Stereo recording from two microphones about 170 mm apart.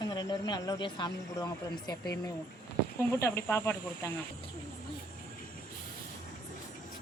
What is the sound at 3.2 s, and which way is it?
Speech, 15° left (ahead or behind).